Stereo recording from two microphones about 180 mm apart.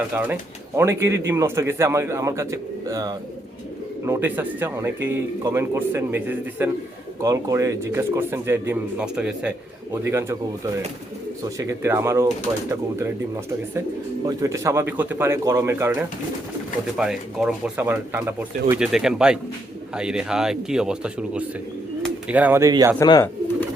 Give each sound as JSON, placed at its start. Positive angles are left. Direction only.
{"t": 0.1, "sound": "speech", "side_deg": -10}
{"t": 11.4, "sound": "speech", "side_deg": -15}
{"t": 14.3, "sound": "speech", "side_deg": -15}
{"t": 17.0, "sound": "a man's voice", "side_deg": -5}
{"t": 23.0, "sound": "speech", "side_deg": 20}